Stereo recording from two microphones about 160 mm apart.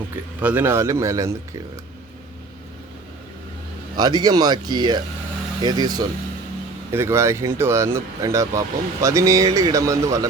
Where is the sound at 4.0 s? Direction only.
25° right (ahead or behind).